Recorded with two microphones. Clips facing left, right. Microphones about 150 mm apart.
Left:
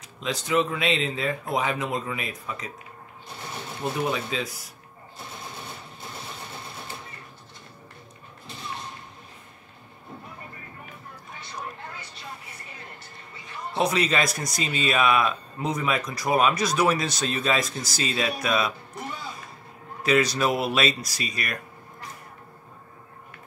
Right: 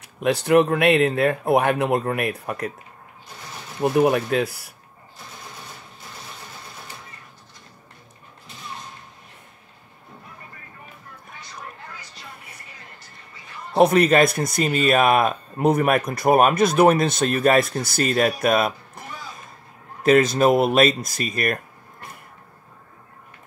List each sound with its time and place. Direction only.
0.0 s speech: 65° right (ahead or behind)
3.8 s speech: 60° right (ahead or behind)
13.7 s speech: 55° right (ahead or behind)
20.0 s speech: 50° right (ahead or behind)